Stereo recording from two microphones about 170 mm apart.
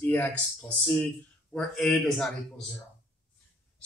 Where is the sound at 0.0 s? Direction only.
10° left (ahead or behind).